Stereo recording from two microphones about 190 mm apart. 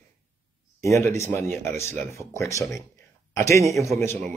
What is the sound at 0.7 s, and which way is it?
Speech, 15° left (ahead or behind).